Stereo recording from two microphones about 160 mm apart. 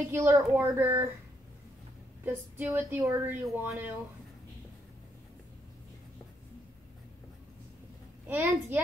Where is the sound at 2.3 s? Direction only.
15° right (ahead or behind).